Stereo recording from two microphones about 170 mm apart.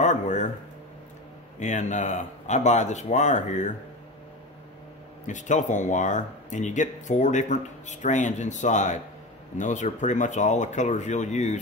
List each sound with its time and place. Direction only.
0.0 s a sound: 45° left (ahead or behind)
1.6 s speech: 45° left (ahead or behind)
5.2 s speech: 45° left (ahead or behind)